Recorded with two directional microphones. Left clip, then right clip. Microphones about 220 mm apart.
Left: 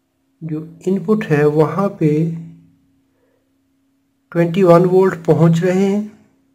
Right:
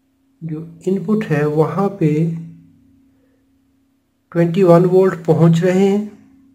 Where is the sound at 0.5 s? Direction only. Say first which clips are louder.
Left 1 dB; 20° left (ahead or behind).